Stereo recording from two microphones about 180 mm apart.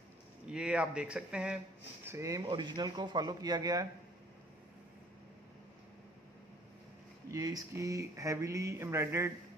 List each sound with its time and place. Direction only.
0.5 s speech: 5° right (ahead or behind)
2.0 s speech: 15° right (ahead or behind)
7.2 s a sound: 20° right (ahead or behind)